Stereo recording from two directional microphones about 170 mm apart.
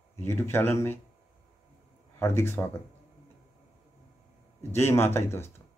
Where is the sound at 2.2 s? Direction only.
15° left (ahead or behind).